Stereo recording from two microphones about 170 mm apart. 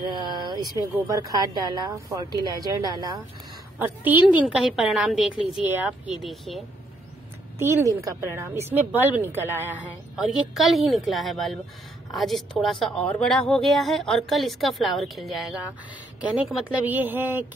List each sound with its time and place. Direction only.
0.0 s a woman's voice: 25° right (ahead or behind)
3.8 s a woman's voice: 10° right (ahead or behind)
7.5 s a woman's voice: 15° right (ahead or behind)
9.7 s a woman's voice: centre (ahead or behind)